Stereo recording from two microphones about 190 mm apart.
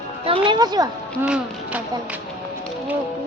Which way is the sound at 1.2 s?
5° right (ahead or behind).